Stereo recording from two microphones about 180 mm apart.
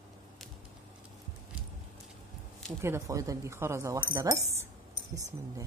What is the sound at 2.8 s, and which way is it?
Speech, 15° right (ahead or behind).